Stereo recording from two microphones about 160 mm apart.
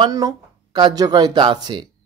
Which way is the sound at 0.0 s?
25° right (ahead or behind).